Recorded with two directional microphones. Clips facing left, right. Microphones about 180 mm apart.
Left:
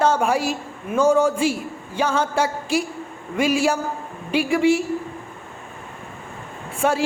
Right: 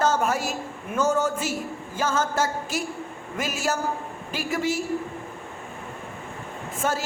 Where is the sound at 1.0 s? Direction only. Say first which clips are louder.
Left 6 dB; 10° left (ahead or behind).